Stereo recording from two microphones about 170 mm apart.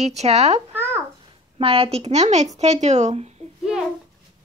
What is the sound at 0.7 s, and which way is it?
Babbling, 15° right (ahead or behind).